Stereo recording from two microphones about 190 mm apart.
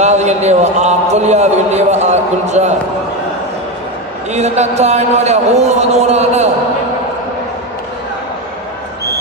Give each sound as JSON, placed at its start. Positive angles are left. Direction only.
{"t": 0.0, "sound": "a man's voice", "side_deg": -35}
{"t": 4.3, "sound": "a man's voice", "side_deg": -35}